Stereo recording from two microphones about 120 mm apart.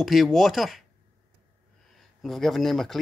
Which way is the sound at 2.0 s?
Centre (ahead or behind).